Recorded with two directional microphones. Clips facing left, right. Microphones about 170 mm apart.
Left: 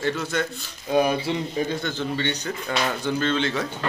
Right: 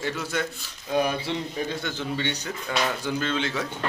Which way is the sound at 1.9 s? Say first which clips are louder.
Left 3 dB; 10° right (ahead or behind).